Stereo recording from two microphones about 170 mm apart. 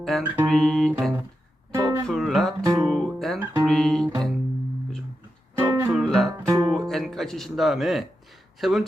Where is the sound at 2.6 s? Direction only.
20° right (ahead or behind).